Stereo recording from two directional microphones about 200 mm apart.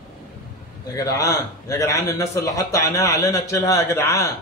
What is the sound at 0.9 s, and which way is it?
A man's voice, 15° left (ahead or behind).